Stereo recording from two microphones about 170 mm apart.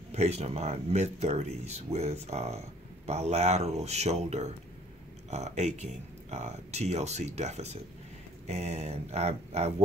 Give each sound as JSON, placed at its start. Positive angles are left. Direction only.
{"t": 0.1, "sound": "speech", "side_deg": -40}